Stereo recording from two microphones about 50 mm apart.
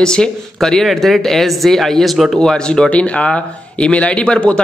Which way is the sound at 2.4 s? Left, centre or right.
Centre.